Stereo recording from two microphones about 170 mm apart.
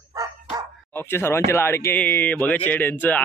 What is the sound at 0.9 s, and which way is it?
Speech, 15° left (ahead or behind).